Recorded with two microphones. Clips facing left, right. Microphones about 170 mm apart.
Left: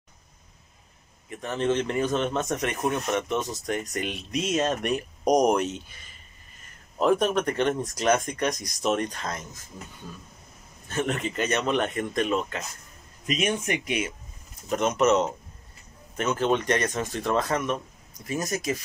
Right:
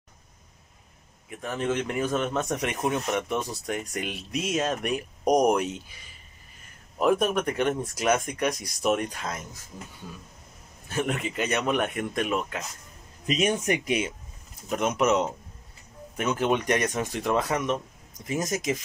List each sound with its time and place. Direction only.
1.3 s speech: 5° right (ahead or behind)
10.9 s speech: 10° right (ahead or behind)
13.3 s speech: 35° right (ahead or behind)
14.7 s speech: 10° right (ahead or behind)